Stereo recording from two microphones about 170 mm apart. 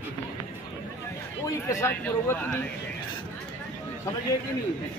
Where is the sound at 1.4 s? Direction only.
20° left (ahead or behind).